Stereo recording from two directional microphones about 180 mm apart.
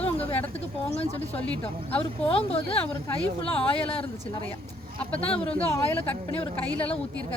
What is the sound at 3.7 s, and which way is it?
Speech, 30° left (ahead or behind).